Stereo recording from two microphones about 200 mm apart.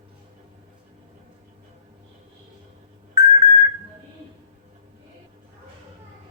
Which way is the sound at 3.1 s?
15° right (ahead or behind).